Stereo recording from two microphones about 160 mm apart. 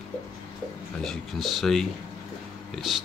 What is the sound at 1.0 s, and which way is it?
Speech, centre (ahead or behind).